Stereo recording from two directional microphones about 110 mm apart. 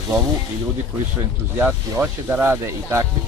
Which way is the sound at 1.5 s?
20° right (ahead or behind).